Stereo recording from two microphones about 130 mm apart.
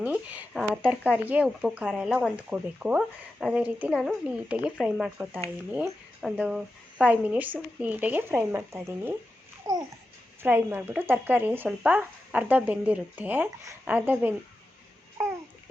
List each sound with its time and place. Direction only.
0.0 s speech: 10° right (ahead or behind)
9.7 s babbling: 30° right (ahead or behind)
10.4 s speech: 15° right (ahead or behind)